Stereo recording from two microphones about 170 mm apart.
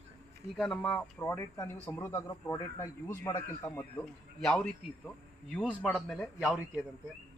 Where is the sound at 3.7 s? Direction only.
5° left (ahead or behind).